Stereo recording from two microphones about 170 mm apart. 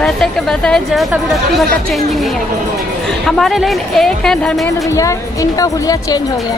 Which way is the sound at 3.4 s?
Centre (ahead or behind).